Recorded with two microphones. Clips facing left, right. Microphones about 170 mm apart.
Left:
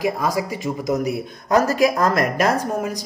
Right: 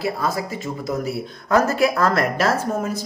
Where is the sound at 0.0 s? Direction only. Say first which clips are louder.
Left 2 dB; 15° left (ahead or behind).